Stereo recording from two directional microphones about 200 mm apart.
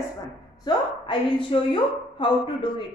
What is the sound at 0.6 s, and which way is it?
A woman's voice, 25° left (ahead or behind).